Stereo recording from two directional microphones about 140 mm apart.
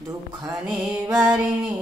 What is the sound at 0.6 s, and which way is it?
Music, 5° right (ahead or behind).